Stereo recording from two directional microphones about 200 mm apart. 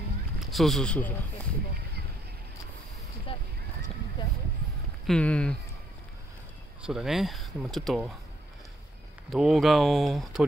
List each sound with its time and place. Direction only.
0.4 s speech: centre (ahead or behind)
3.3 s boat: 25° left (ahead or behind)
5.0 s speech: 5° left (ahead or behind)
6.9 s speech: centre (ahead or behind)
9.3 s speech: centre (ahead or behind)